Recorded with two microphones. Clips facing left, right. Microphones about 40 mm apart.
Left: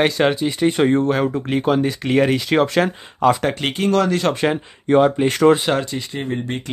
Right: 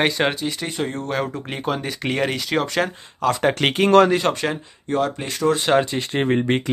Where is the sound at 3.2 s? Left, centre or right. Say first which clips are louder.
Left 5 dB; centre.